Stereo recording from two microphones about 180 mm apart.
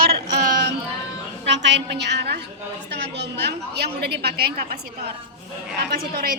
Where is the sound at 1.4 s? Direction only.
75° right (ahead or behind); by 4.7 s 60° right (ahead or behind).